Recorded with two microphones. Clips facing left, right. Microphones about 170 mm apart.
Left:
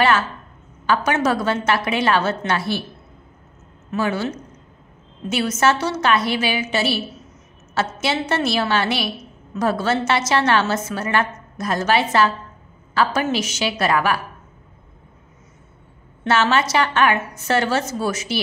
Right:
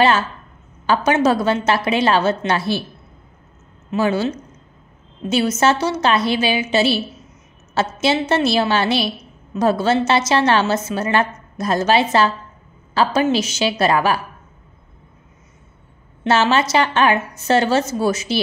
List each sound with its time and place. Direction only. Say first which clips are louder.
0.8 s a woman's voice: right 3 dB; 25° right (ahead or behind)
3.9 s a woman's voice: right 4 dB; 30° right (ahead or behind)
5.3 s a woman's voice: right 2 dB; 25° right (ahead or behind)
16.3 s a woman's voice: right 2 dB; 30° right (ahead or behind)